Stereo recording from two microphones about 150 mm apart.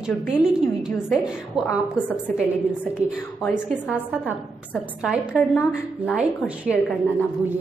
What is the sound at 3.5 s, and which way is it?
A woman's voice, 5° right (ahead or behind).